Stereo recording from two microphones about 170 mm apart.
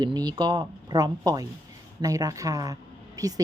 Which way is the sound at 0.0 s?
25° right (ahead or behind).